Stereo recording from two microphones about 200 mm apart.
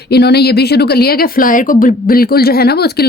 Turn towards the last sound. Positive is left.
turn(degrees=50)  # may be behind; listen again after turning